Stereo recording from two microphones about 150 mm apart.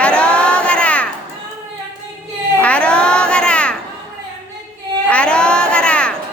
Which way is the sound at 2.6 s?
10° left (ahead or behind).